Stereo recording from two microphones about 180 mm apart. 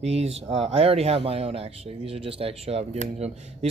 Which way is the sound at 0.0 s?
35° right (ahead or behind).